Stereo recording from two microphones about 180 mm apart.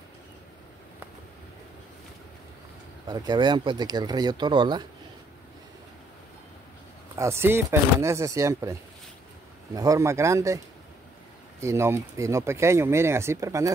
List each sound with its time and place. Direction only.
3.1 s speech: 25° right (ahead or behind)
7.2 s speech: 15° right (ahead or behind)
9.8 s speech: 15° right (ahead or behind)
11.6 s speech: 15° right (ahead or behind)